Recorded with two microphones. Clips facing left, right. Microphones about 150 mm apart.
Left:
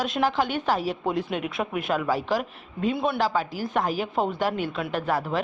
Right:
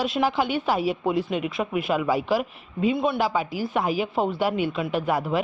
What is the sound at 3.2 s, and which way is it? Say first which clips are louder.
Speech: right 1 dB; 10° right (ahead or behind).